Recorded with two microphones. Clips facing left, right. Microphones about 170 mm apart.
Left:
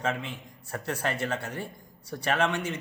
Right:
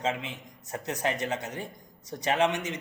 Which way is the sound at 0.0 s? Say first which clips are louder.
Even; 20° right (ahead or behind).